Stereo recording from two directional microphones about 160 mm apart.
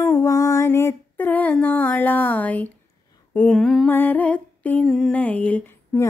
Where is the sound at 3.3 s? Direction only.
10° left (ahead or behind).